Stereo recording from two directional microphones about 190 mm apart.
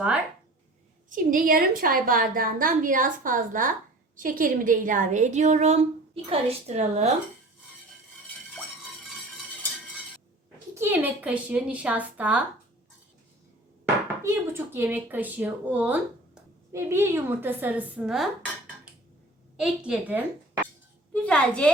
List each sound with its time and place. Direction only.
1.1 s a woman's voice: 45° right (ahead or behind)
10.8 s a woman's voice: 10° right (ahead or behind)
13.8 s speech: 15° right (ahead or behind)
19.5 s a woman's voice: 5° right (ahead or behind)
21.1 s a woman's voice: 5° left (ahead or behind)